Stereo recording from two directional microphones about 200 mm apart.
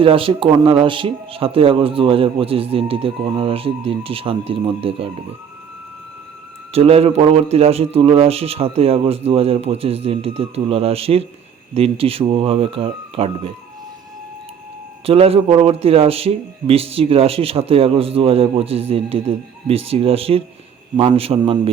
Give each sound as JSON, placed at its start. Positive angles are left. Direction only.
{"t": 0.0, "sound": "a man's voice", "side_deg": -25}
{"t": 6.7, "sound": "a man's voice", "side_deg": -30}
{"t": 15.0, "sound": "a man's voice", "side_deg": -30}